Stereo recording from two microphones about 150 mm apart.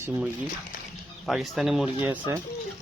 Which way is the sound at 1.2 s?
Centre (ahead or behind).